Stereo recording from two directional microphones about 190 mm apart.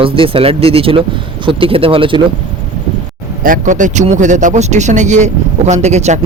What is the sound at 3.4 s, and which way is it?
Speech, 45° right (ahead or behind).